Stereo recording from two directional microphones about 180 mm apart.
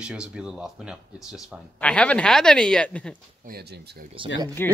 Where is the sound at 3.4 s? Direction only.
60° right (ahead or behind).